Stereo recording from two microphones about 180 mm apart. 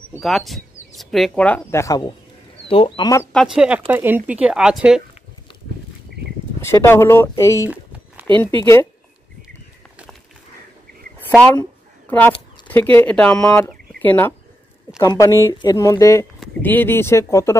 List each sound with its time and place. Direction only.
0.2 s speech: centre (ahead or behind); by 2.1 s 20° left (ahead or behind)
2.7 s speech: 30° left (ahead or behind)
3.3 s speech: 5° right (ahead or behind)
6.6 s speech: 15° left (ahead or behind)
7.7 s a sound: 5° right (ahead or behind)
8.4 s speech: 15° left (ahead or behind)
12.1 s speech: 10° left (ahead or behind)